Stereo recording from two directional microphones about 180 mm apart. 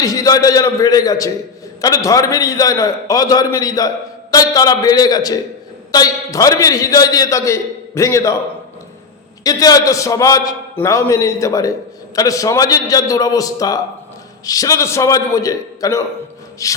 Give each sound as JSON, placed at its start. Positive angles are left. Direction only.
{"t": 0.0, "sound": "a man's voice", "side_deg": 20}
{"t": 9.4, "sound": "a man's voice", "side_deg": 20}
{"t": 16.6, "sound": "music", "side_deg": 15}